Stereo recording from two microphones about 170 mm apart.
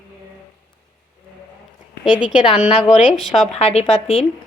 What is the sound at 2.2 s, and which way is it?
A woman's voice, 30° left (ahead or behind).